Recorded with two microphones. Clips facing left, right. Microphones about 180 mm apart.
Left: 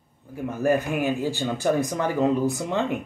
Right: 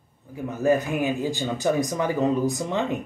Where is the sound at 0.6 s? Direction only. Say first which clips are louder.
Right 1 dB; 15° right (ahead or behind).